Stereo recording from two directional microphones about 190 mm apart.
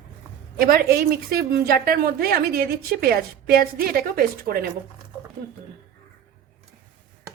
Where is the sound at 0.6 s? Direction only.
55° right (ahead or behind).